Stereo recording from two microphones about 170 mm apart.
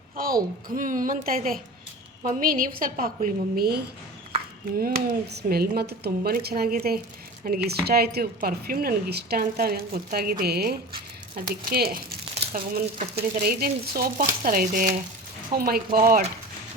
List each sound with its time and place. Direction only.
0.2 s speech: 55° right (ahead or behind)
4.8 s speech: 60° right (ahead or behind)